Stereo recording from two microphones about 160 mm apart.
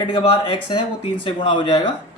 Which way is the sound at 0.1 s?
30° left (ahead or behind).